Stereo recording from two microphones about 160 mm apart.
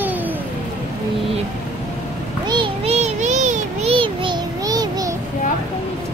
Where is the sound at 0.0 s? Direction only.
10° right (ahead or behind).